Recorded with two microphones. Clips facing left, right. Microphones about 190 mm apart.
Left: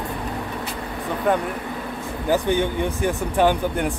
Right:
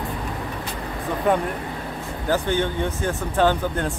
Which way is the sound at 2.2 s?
15° left (ahead or behind).